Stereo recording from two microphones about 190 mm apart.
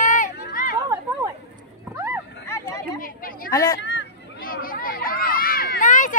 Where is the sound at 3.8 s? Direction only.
70° left (ahead or behind).